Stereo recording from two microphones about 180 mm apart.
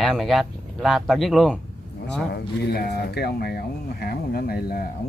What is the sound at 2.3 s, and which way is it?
Speech, 65° left (ahead or behind).